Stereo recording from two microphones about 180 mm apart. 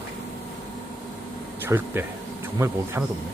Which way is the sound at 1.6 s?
10° right (ahead or behind).